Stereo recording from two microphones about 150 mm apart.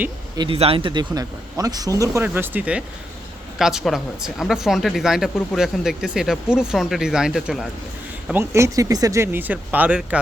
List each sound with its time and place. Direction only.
0.3 s speech: 35° right (ahead or behind); by 7.7 s centre (ahead or behind)
8.3 s speech: 15° right (ahead or behind)